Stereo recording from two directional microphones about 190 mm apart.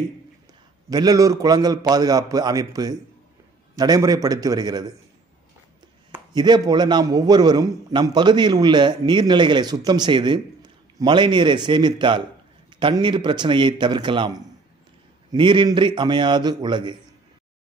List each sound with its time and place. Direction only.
0.8 s a man's voice: 20° right (ahead or behind)
6.3 s a man's voice: 20° right (ahead or behind)